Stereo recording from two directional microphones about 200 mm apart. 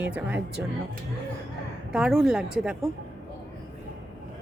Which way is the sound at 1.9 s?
Centre (ahead or behind).